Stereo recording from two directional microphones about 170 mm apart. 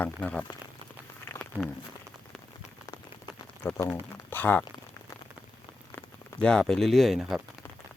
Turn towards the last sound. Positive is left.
turn(degrees=0)  # may be behind; listen again after turning